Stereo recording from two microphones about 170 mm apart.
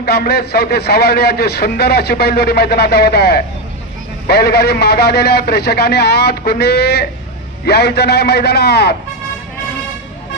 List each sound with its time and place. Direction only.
0.0 s a man's voice: 70° left (ahead or behind)